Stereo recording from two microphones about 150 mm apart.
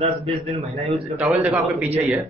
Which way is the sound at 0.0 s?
45° right (ahead or behind).